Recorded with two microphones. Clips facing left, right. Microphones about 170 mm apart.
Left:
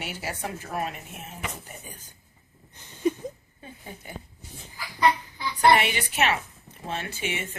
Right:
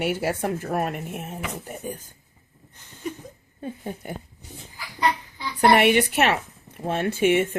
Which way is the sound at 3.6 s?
50° right (ahead or behind).